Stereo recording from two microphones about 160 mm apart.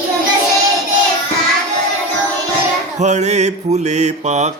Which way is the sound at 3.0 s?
45° right (ahead or behind).